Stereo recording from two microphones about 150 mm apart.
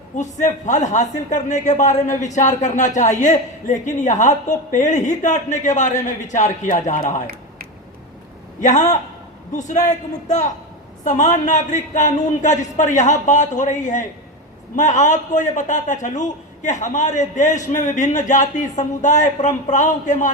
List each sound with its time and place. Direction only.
0.2 s a man's voice: 55° left (ahead or behind)
8.6 s a man's voice: 55° left (ahead or behind)